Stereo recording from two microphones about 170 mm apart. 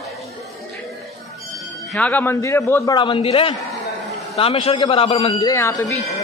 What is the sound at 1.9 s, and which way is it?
A man's voice, 10° left (ahead or behind).